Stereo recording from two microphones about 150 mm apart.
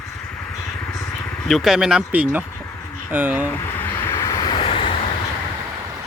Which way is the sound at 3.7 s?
15° left (ahead or behind).